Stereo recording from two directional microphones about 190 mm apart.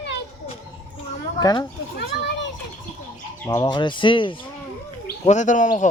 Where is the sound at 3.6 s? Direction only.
25° left (ahead or behind).